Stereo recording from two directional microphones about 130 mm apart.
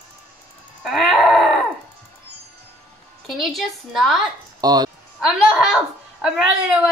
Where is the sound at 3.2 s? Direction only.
Centre (ahead or behind).